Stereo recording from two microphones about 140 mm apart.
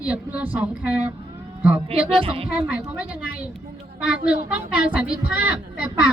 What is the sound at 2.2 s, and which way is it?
Speech, 40° right (ahead or behind).